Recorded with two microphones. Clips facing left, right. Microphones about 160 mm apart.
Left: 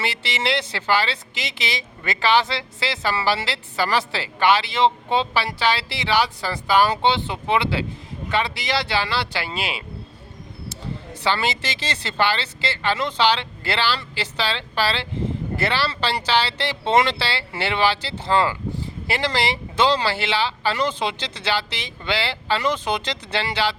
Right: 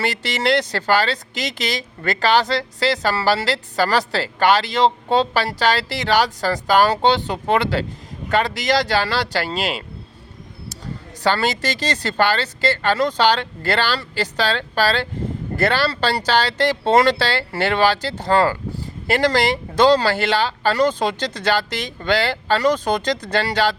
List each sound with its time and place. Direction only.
0.0 s speech: 45° right (ahead or behind)
11.2 s speech: 40° right (ahead or behind)